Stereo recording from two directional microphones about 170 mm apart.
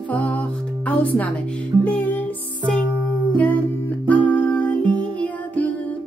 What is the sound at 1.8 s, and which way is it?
Music, 10° left (ahead or behind).